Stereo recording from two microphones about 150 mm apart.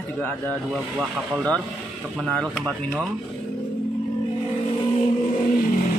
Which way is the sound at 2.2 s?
Centre (ahead or behind).